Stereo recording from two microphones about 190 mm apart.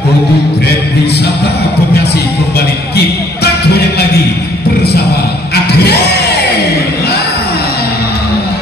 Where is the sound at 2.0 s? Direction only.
55° left (ahead or behind).